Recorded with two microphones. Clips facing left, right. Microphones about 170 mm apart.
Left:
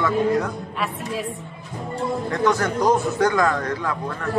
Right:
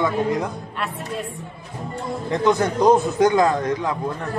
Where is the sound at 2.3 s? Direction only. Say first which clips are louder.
Right 4 dB; 20° right (ahead or behind).